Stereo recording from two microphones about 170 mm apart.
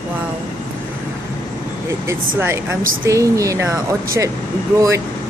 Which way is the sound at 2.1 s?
15° right (ahead or behind).